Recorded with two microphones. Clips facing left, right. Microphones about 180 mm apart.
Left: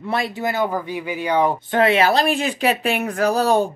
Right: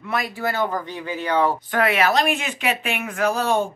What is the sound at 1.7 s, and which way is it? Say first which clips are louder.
A woman's voice: left 4 dB; 25° left (ahead or behind).